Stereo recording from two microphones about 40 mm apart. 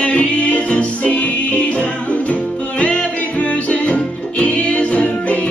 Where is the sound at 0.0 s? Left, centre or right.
Left.